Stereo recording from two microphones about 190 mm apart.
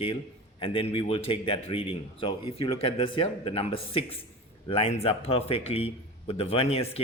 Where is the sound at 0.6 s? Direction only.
30° left (ahead or behind).